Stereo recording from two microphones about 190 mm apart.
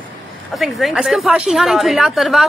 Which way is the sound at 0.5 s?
Centre (ahead or behind).